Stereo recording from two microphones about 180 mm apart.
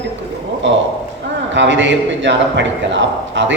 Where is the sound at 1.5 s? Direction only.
90° right.